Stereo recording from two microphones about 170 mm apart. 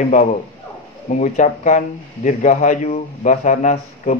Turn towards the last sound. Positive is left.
turn(degrees=45)  # may be behind; listen again after turning